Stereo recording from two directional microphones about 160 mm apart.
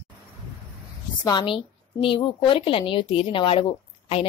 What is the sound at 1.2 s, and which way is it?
A woman's voice, 30° left (ahead or behind).